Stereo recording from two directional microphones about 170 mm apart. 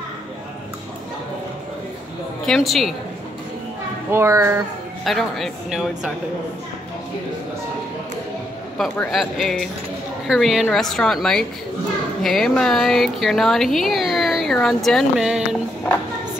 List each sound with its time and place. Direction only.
2.4 s speech: centre (ahead or behind)
4.1 s a child's voice: 15° right (ahead or behind)
5.0 s speech: centre (ahead or behind)
8.9 s speech: 5° left (ahead or behind)